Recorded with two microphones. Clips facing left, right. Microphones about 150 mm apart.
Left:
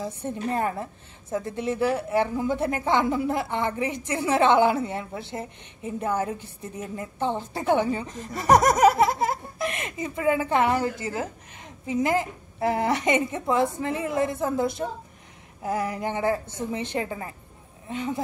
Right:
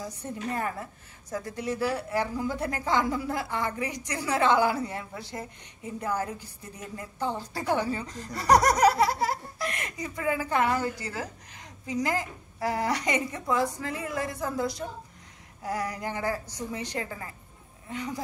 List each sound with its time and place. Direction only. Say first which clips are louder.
0.0 s speech: left 5 dB; 25° left (ahead or behind)